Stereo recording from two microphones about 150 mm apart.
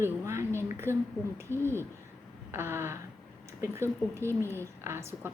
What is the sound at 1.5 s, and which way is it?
Speech, 15° left (ahead or behind).